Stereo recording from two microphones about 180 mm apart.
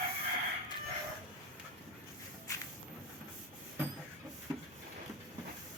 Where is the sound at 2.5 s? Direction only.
20° left (ahead or behind).